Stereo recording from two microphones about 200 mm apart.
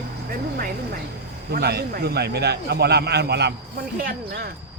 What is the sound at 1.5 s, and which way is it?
A man's voice, 55° right (ahead or behind).